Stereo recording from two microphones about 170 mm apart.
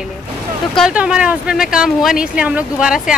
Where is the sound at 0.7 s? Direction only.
5° right (ahead or behind).